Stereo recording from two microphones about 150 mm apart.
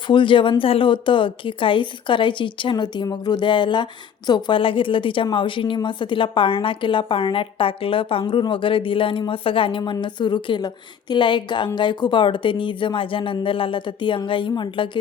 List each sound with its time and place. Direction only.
0.1 s a woman's voice: 35° left (ahead or behind)